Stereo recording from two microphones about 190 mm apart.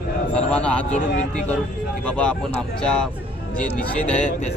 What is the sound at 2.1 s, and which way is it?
Speech, 5° left (ahead or behind).